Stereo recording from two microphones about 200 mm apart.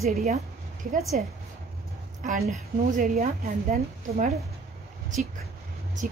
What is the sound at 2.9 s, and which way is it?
Speech, 45° right (ahead or behind).